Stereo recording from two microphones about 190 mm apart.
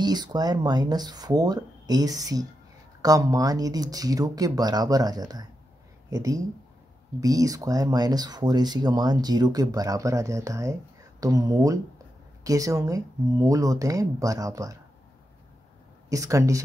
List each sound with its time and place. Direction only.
0.0 s speech: 20° right (ahead or behind)
16.1 s speech: 15° right (ahead or behind)